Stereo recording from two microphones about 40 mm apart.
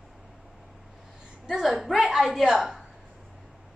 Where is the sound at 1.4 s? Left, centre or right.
Centre.